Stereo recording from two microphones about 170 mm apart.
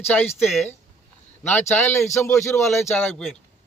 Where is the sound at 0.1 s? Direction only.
5° left (ahead or behind).